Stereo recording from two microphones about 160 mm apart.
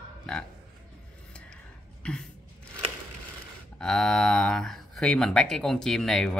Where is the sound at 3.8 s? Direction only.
5° left (ahead or behind).